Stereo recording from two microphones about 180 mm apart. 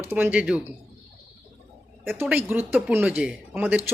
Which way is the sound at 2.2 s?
10° right (ahead or behind).